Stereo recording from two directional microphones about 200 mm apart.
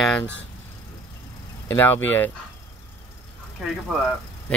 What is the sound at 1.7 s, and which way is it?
Speech, 10° left (ahead or behind).